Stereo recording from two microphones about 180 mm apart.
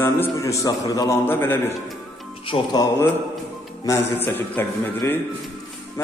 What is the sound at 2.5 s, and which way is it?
Speech, 30° left (ahead or behind).